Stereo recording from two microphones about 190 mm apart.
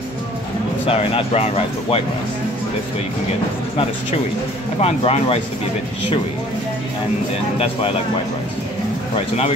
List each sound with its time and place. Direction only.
0.8 s speech: 30° left (ahead or behind)
4.7 s speech: 35° left (ahead or behind)